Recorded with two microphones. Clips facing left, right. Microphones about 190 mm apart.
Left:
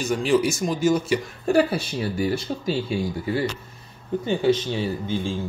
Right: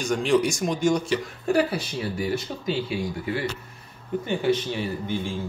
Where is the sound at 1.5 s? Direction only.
30° left (ahead or behind).